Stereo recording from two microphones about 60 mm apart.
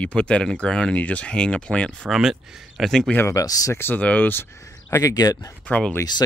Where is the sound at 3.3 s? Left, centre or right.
Left.